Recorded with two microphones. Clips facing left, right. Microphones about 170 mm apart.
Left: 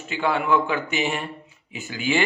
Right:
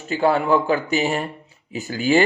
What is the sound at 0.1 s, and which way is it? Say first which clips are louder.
A man's voice: right 4 dB; 40° right (ahead or behind).